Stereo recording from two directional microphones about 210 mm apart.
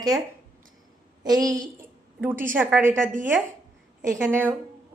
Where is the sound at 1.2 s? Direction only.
15° right (ahead or behind).